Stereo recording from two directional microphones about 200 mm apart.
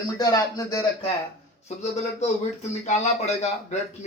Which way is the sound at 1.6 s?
35° left (ahead or behind).